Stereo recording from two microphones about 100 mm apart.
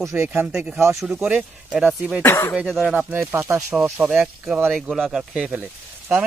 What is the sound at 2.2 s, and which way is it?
Speech, 25° left (ahead or behind).